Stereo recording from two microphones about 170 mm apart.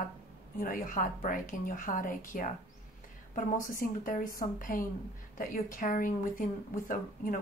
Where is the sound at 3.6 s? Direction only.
55° left (ahead or behind).